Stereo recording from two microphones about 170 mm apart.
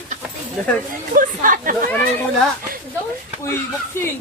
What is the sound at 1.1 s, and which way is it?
Speech, 50° right (ahead or behind).